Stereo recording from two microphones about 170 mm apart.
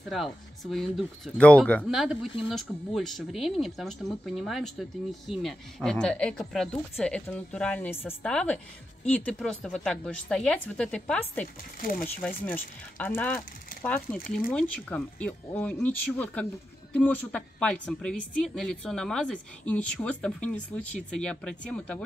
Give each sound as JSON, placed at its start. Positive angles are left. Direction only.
{"t": 0.1, "sound": "a woman's voice", "side_deg": 0}
{"t": 14.5, "sound": "a woman's voice", "side_deg": 5}